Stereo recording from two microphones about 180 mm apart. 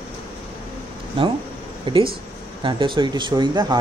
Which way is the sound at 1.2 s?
30° right (ahead or behind).